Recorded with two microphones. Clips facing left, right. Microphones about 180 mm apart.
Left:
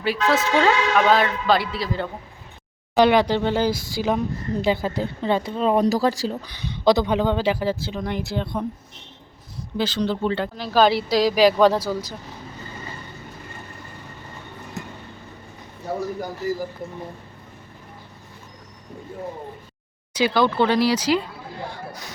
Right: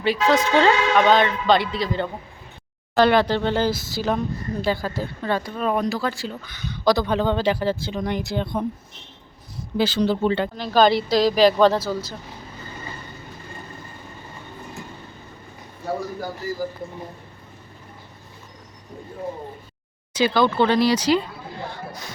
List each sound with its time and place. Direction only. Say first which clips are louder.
0.0 s speech: right 2 dB; 5° left (ahead or behind)
2.9 s speech: left 1 dB; 15° left (ahead or behind); by 8.6 s centre (ahead or behind)
9.7 s speech: right 3 dB; 5° right (ahead or behind); by 12.1 s 15° left (ahead or behind)
20.1 s speech: right 1 dB; 10° left (ahead or behind)